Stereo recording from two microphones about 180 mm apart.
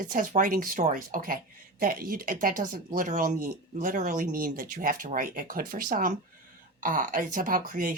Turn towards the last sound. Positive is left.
turn(degrees=-50)  # may be behind; listen again after turning